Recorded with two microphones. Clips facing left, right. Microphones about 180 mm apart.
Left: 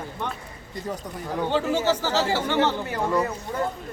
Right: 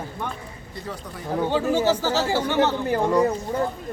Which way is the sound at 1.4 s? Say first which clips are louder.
Right 2 dB; 10° right (ahead or behind).